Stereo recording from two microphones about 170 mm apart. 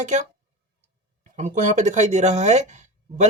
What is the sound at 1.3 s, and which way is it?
Speech, 45° right (ahead or behind).